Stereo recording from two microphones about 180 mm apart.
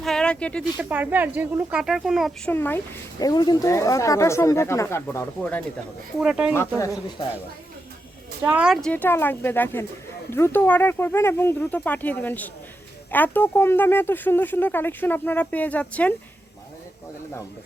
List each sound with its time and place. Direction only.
0.0 s a sound: 5° left (ahead or behind)
0.8 s speech: 10° right (ahead or behind)
2.5 s speech: 10° left (ahead or behind)
6.1 s speech: 5° right (ahead or behind)
6.5 s speech: 15° left (ahead or behind)
8.4 s speech: 5° right (ahead or behind)